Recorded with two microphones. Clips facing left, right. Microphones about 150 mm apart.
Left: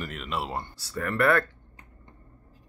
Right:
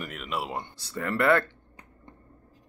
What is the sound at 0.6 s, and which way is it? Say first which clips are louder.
Speech: left 1 dB; 20° right (ahead or behind).